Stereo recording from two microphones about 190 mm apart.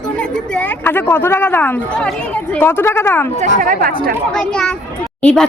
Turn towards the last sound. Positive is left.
turn(degrees=5)  # may be behind; listen again after turning